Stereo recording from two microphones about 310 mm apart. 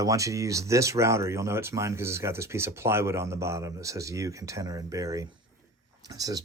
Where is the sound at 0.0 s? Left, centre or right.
Centre.